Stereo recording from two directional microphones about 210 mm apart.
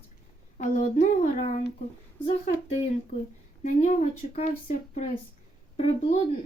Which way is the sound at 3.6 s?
35° left (ahead or behind).